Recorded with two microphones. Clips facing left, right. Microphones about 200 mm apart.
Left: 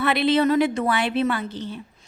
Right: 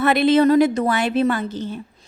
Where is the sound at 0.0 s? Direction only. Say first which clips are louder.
Right 5 dB; 45° right (ahead or behind).